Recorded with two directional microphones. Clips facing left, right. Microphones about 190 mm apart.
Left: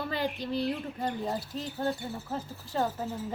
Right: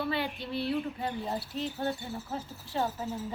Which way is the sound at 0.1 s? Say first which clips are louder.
Left 2 dB; 40° left (ahead or behind).